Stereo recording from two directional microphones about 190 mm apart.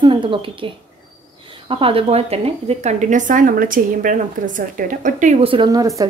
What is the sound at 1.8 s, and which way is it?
Speech, 30° right (ahead or behind).